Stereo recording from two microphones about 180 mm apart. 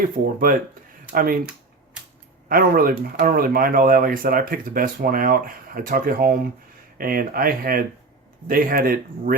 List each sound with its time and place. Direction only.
0.0 s speech: 50° right (ahead or behind)
2.5 s speech: 55° right (ahead or behind)